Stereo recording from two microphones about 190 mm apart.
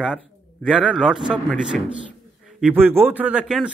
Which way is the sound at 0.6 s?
5° right (ahead or behind).